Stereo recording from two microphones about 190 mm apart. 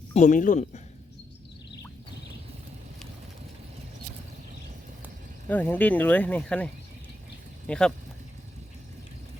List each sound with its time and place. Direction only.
0.1 s speech: 40° left (ahead or behind)
5.5 s speech: 10° left (ahead or behind)
7.7 s speech: 5° left (ahead or behind)